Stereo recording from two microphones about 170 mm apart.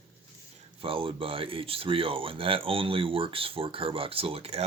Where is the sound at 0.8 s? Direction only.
30° right (ahead or behind).